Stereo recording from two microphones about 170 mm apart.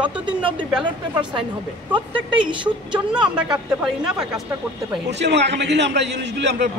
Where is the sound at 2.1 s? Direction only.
30° right (ahead or behind).